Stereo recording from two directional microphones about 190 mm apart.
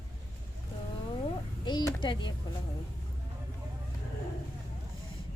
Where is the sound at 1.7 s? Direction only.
20° left (ahead or behind).